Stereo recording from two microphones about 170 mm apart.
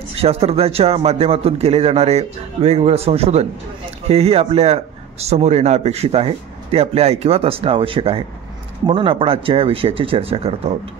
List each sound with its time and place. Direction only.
0.1 s a man's voice: 35° right (ahead or behind)